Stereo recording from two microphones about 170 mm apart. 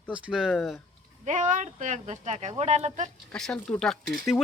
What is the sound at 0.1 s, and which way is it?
Speech, 5° right (ahead or behind).